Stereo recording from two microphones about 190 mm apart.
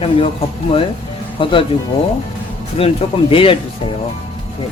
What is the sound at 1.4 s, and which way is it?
Speech, 25° left (ahead or behind).